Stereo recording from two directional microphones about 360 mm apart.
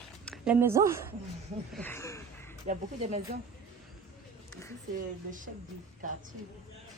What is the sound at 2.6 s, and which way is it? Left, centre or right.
Speech, centre.